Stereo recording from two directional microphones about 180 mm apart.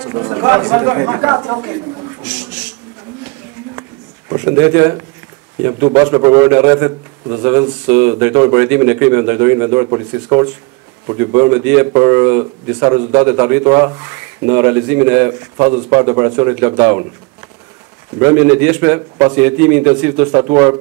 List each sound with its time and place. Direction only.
0.0 s speech: 20° right (ahead or behind)
2.2 s a sound: 5° right (ahead or behind)
4.3 s speech: 15° right (ahead or behind)
18.2 s speech: 15° right (ahead or behind)